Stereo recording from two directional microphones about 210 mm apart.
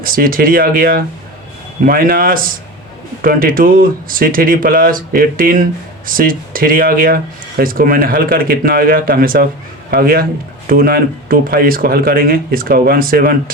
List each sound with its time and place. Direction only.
0.0 s a man's voice: 40° right (ahead or behind)